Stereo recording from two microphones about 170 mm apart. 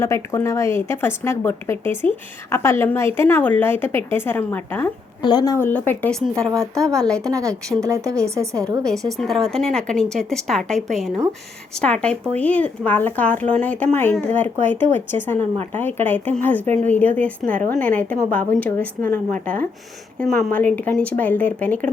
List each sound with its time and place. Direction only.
0.0 s speech: 15° left (ahead or behind)
5.2 s a woman's voice: 25° left (ahead or behind)
5.5 s speech: 10° left (ahead or behind)
7.3 s a woman's voice: 20° right (ahead or behind)
8.8 s a woman's voice: centre (ahead or behind)